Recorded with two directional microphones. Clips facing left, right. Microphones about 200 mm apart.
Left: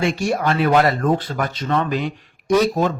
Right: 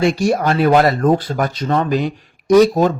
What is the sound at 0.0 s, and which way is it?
A man's voice, 40° right (ahead or behind).